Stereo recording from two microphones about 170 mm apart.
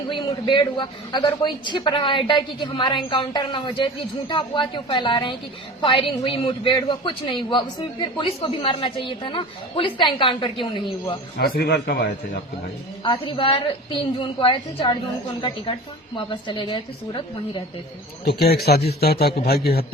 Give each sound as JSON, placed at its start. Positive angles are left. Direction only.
{"t": 0.1, "sound": "a man's voice", "side_deg": 30}
{"t": 11.3, "sound": "a man's voice", "side_deg": 70}
{"t": 13.1, "sound": "a man's voice", "side_deg": 30}
{"t": 18.3, "sound": "a man's voice", "side_deg": 70}